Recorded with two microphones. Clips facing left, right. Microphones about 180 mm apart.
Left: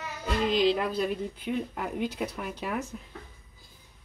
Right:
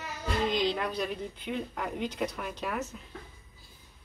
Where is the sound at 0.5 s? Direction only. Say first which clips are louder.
Left 5 dB; 5° left (ahead or behind).